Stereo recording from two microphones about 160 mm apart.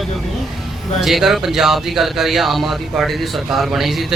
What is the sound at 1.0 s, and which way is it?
Speech, centre (ahead or behind).